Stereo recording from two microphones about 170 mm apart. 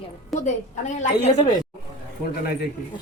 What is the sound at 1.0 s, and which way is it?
Speech, 45° left (ahead or behind).